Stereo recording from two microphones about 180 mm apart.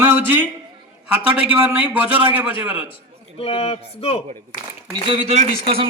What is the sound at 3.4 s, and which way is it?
Speech, 30° left (ahead or behind).